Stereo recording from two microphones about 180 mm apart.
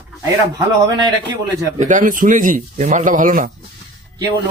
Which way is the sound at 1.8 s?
45° right (ahead or behind).